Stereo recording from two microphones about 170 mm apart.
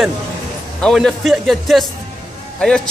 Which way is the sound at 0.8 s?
Centre (ahead or behind).